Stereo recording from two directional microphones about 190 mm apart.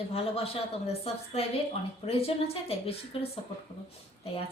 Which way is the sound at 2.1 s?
30° left (ahead or behind).